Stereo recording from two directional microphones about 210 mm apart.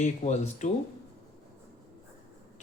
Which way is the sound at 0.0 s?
35° left (ahead or behind).